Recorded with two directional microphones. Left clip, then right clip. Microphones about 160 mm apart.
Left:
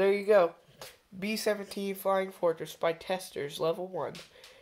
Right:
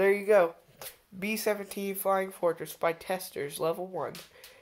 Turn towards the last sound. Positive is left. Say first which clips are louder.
# even
turn(degrees=0)  # may be behind; listen again after turning